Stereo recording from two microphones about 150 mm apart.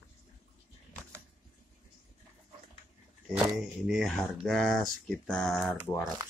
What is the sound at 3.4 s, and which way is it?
Speech, centre (ahead or behind).